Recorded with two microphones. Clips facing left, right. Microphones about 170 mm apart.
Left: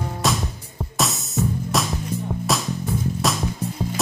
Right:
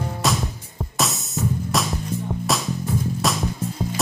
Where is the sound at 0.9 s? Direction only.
Centre (ahead or behind).